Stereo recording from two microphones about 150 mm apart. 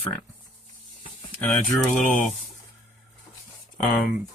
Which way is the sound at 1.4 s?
Centre (ahead or behind).